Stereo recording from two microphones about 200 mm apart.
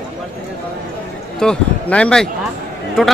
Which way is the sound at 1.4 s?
5° left (ahead or behind).